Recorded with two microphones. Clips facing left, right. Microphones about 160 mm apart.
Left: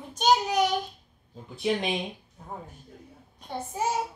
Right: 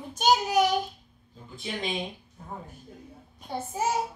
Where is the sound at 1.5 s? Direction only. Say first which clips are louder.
Left 7 dB; 70° left (ahead or behind).